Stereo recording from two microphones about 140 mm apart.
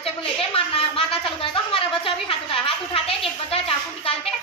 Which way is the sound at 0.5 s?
40° left (ahead or behind).